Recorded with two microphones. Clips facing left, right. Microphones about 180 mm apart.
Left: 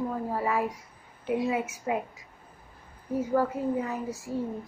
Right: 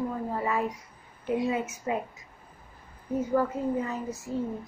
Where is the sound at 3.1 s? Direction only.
10° left (ahead or behind).